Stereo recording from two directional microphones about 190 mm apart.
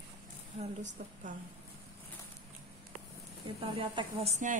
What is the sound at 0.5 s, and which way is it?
Speech, 40° right (ahead or behind).